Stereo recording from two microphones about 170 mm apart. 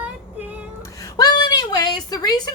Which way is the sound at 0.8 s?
20° left (ahead or behind).